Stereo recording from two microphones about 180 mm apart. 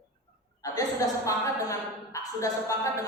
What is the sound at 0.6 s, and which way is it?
A woman's voice, 20° left (ahead or behind).